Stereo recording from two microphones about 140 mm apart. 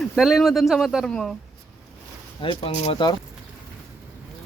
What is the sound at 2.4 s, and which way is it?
Speech, 40° left (ahead or behind).